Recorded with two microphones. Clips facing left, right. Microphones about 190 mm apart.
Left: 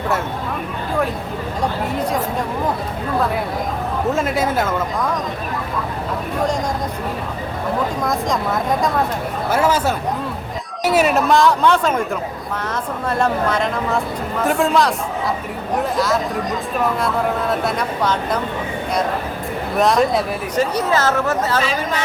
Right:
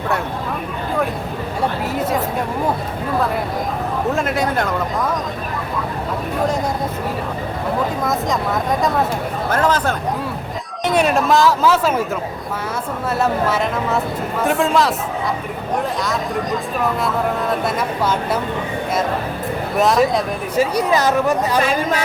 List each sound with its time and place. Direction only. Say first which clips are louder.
1.9 s speech: right 1 dB; 5° right (ahead or behind)
4.1 s speech: left 1 dB; centre (ahead or behind)
7.8 s speech: even; centre (ahead or behind)
13.1 s speech: even; 5° right (ahead or behind)
19.7 s speech: even; centre (ahead or behind)
21.6 s speech: right 3 dB; 50° right (ahead or behind)